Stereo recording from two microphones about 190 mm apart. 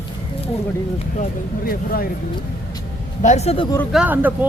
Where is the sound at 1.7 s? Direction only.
50° left (ahead or behind).